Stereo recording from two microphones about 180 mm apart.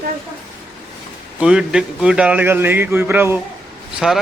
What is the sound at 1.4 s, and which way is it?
A man's voice, 5° right (ahead or behind).